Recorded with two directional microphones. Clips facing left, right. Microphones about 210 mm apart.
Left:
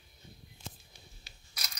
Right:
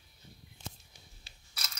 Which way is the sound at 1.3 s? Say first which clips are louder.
Left 2 dB; 30° right (ahead or behind).